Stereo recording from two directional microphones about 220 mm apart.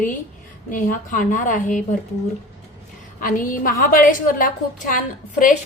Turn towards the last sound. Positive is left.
turn(degrees=35)  # may be behind; listen again after turning